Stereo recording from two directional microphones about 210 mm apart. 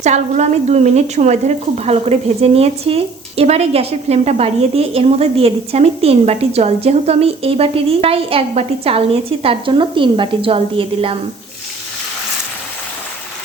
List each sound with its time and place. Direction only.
0.0 s a woman's voice: 35° right (ahead or behind)